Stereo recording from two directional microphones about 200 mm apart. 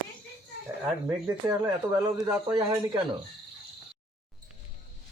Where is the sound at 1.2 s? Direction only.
10° right (ahead or behind).